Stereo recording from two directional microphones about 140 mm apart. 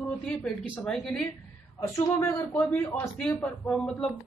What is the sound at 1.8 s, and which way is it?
Speech, 20° left (ahead or behind).